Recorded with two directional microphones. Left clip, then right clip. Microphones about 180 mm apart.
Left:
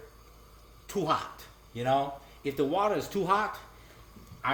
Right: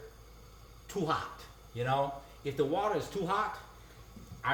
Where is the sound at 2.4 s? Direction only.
50° left (ahead or behind).